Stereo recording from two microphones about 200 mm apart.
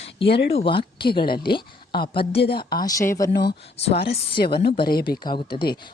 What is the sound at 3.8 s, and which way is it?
Speech, 30° left (ahead or behind).